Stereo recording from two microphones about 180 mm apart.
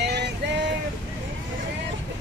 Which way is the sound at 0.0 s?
70° right (ahead or behind).